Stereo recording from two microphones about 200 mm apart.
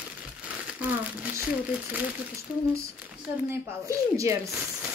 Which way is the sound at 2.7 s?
10° right (ahead or behind).